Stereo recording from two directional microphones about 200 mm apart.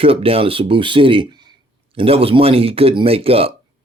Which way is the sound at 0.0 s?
30° right (ahead or behind).